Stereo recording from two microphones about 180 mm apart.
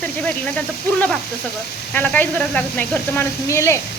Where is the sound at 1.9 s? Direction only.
10° left (ahead or behind).